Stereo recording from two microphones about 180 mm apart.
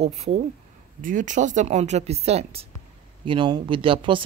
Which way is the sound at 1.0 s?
45° right (ahead or behind).